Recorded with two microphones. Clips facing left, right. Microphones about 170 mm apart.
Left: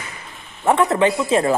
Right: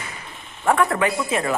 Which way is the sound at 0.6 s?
25° left (ahead or behind).